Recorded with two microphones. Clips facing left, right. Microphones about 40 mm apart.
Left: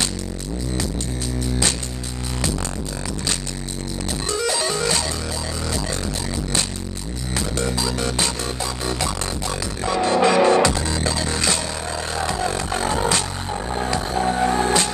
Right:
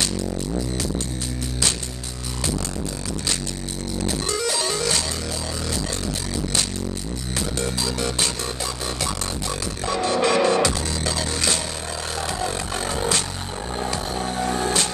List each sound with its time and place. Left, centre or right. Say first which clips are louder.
4.3 s music: left 5 dB; left
7.3 s music: left 3 dB; left
10.0 s music: left 3 dB; left